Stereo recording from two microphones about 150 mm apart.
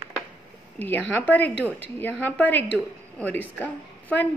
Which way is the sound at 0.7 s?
15° left (ahead or behind).